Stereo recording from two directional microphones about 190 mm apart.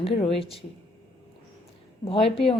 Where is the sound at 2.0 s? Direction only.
30° left (ahead or behind).